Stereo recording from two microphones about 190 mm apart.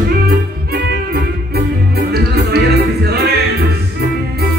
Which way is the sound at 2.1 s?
55° right (ahead or behind).